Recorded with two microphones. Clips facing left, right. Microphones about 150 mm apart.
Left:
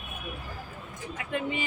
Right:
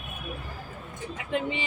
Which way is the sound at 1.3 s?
20° right (ahead or behind).